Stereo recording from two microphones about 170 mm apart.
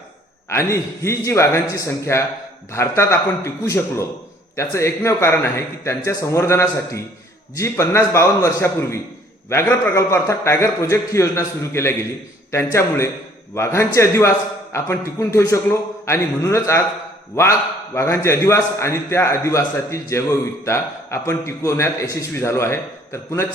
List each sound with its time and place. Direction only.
0.4 s a man's voice: 15° left (ahead or behind)